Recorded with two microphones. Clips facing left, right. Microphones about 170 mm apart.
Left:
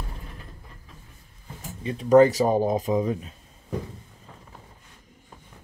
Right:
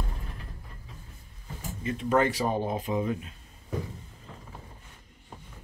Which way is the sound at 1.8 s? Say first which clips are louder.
Left 9 dB; 35° left (ahead or behind).